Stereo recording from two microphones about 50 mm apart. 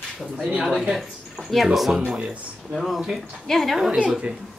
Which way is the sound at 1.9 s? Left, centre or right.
Centre.